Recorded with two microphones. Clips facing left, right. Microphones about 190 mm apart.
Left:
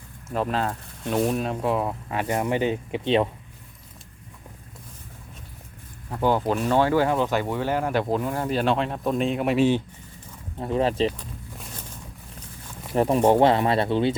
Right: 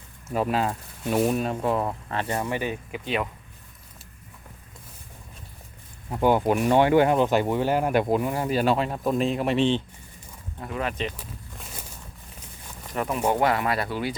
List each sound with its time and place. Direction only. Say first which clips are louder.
0.3 s speech: right 1 dB; 5° right (ahead or behind); by 3.2 s 25° left (ahead or behind)
6.1 s speech: right 2 dB; 15° right (ahead or behind); by 9.8 s 10° left (ahead or behind)
10.6 s speech: left 7 dB; 30° left (ahead or behind)
11.2 s a sound: left 2 dB; 5° right (ahead or behind)
12.9 s speech: left 6 dB; 30° left (ahead or behind)